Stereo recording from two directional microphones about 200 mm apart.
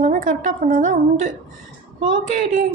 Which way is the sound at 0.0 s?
40° right (ahead or behind).